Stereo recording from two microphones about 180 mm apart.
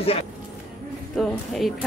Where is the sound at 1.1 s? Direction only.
Centre (ahead or behind).